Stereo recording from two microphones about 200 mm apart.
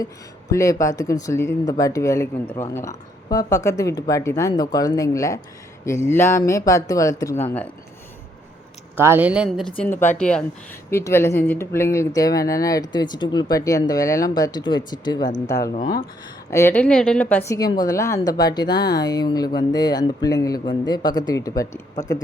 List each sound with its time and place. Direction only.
0.5 s speech: 15° left (ahead or behind)
9.0 s a woman's voice: 10° right (ahead or behind)
9.8 s a woman's voice: 10° left (ahead or behind)